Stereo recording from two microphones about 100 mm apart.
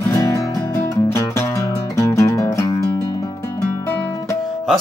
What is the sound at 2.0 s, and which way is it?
Music, 30° left (ahead or behind).